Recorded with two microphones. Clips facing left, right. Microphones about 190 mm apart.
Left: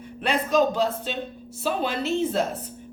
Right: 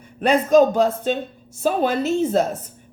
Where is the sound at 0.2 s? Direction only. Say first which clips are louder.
Right 7 dB; 45° right (ahead or behind).